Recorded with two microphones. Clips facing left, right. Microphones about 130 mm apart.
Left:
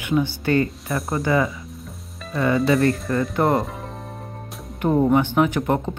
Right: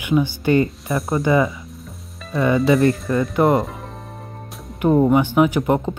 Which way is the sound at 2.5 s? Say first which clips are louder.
Right 3 dB; centre (ahead or behind).